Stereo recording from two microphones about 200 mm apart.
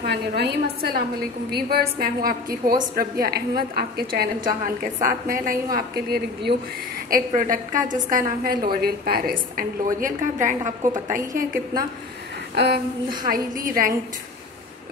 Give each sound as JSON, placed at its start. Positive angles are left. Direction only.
{"t": 0.0, "sound": "a woman's voice", "side_deg": -55}